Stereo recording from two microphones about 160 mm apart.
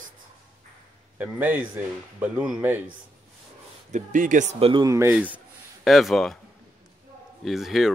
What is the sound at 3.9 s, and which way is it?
Speech, 55° right (ahead or behind).